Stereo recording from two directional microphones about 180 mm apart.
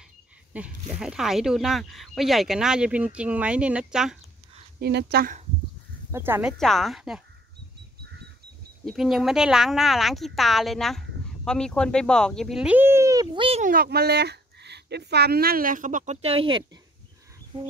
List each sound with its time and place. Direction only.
0.5 s speech: 10° right (ahead or behind)
4.7 s speech: 65° right (ahead or behind)
6.1 s speech: 10° right (ahead or behind)
6.6 s speech: centre (ahead or behind)
8.8 s speech: centre (ahead or behind); by 13.6 s 25° right (ahead or behind)
13.6 s speech: 55° right (ahead or behind); by 16.6 s 30° right (ahead or behind)
17.5 s music: 30° right (ahead or behind)